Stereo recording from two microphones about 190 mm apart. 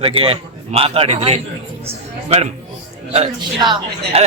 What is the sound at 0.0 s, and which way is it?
A man's voice, 30° right (ahead or behind).